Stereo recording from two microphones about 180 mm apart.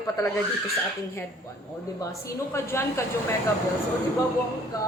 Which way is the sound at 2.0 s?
15° left (ahead or behind).